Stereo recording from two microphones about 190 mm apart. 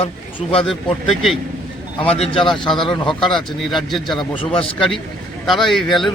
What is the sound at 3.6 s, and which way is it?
Speech, centre (ahead or behind).